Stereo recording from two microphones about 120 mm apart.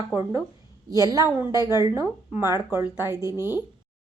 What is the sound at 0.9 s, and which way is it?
Speech, 30° right (ahead or behind).